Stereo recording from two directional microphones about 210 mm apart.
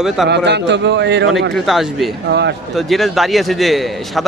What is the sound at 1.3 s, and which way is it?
Speech, centre (ahead or behind).